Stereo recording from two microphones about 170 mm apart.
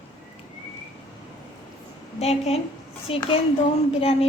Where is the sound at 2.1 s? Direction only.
40° left (ahead or behind).